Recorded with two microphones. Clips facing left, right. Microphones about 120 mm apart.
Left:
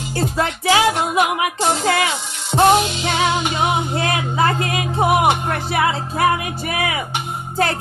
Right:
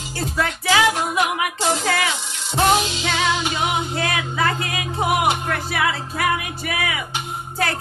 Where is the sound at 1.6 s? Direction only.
40° left (ahead or behind).